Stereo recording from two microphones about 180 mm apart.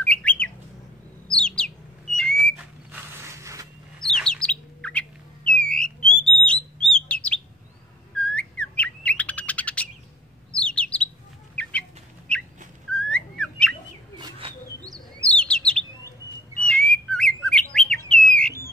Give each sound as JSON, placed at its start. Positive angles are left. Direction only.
{"t": 0.0, "sound": "bird", "side_deg": 5}
{"t": 2.6, "sound": "mechanisms", "side_deg": -10}
{"t": 4.0, "sound": "bird", "side_deg": 5}
{"t": 5.5, "sound": "a sound", "side_deg": 5}
{"t": 6.1, "sound": "bird", "side_deg": 5}
{"t": 11.6, "sound": "chicken", "side_deg": 5}
{"t": 12.3, "sound": "a sound", "side_deg": 5}
{"t": 12.9, "sound": "whistling", "side_deg": 5}
{"t": 14.1, "sound": "bird", "side_deg": -25}
{"t": 15.2, "sound": "chirp", "side_deg": 5}
{"t": 16.6, "sound": "bird", "side_deg": 5}